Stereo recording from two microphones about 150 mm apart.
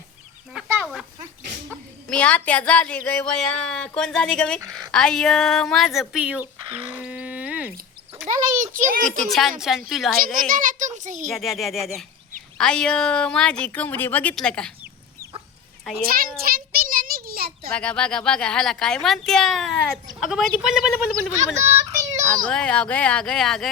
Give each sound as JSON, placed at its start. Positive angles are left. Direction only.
{"t": 0.6, "sound": "a sound", "side_deg": -5}
{"t": 2.0, "sound": "a woman's voice", "side_deg": 10}
{"t": 8.3, "sound": "a sound", "side_deg": -60}
{"t": 9.0, "sound": "a woman's voice", "side_deg": 0}
{"t": 10.5, "sound": "a child's voice", "side_deg": -60}
{"t": 11.3, "sound": "a woman's voice", "side_deg": 0}
{"t": 16.1, "sound": "a sound", "side_deg": -75}
{"t": 17.7, "sound": "a woman's voice", "side_deg": 5}
{"t": 22.4, "sound": "speech", "side_deg": 5}